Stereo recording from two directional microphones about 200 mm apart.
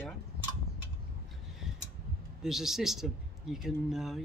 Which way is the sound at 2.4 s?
Centre (ahead or behind).